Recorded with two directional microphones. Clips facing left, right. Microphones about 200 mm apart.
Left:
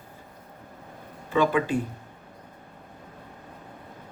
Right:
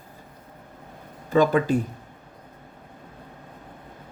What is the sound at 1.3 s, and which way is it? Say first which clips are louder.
Speech: right 4 dB; 40° right (ahead or behind).